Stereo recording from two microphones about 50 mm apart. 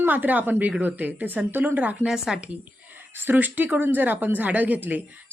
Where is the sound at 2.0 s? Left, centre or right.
Centre.